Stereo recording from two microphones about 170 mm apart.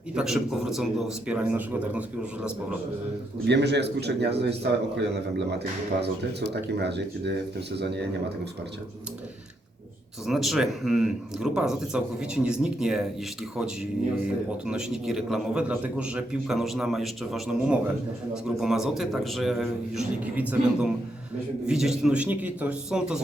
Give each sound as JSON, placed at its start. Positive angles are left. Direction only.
{"t": 0.1, "sound": "a man's voice", "side_deg": -5}
{"t": 3.4, "sound": "a man's voice", "side_deg": -85}
{"t": 10.2, "sound": "a man's voice", "side_deg": 0}
{"t": 14.7, "sound": "a man's voice", "side_deg": -5}